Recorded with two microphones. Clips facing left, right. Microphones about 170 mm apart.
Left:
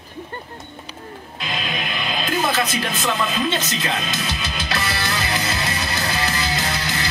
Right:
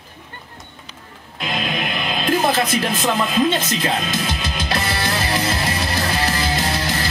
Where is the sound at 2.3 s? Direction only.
50° right (ahead or behind).